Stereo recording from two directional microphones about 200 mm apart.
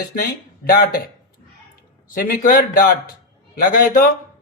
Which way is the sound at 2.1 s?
45° left (ahead or behind).